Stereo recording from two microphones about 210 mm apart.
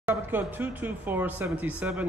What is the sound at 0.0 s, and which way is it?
A man's voice, 10° right (ahead or behind).